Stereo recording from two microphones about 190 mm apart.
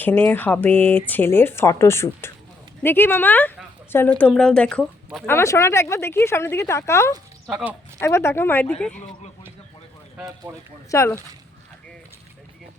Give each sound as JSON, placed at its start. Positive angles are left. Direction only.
{"t": 0.0, "sound": "speech", "side_deg": 10}
{"t": 5.3, "sound": "speech", "side_deg": 15}
{"t": 7.4, "sound": "speech", "side_deg": -5}
{"t": 7.9, "sound": "speech", "side_deg": 15}
{"t": 10.2, "sound": "speech", "side_deg": -20}
{"t": 10.9, "sound": "speech", "side_deg": 15}